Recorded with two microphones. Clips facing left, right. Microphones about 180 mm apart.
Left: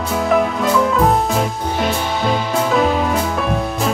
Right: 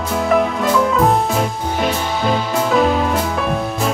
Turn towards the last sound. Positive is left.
turn(degrees=0)  # may be behind; listen again after turning